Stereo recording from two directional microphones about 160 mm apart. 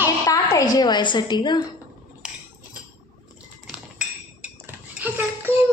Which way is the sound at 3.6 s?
5° right (ahead or behind).